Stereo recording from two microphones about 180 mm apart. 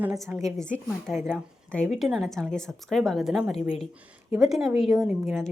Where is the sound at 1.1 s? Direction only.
5° right (ahead or behind).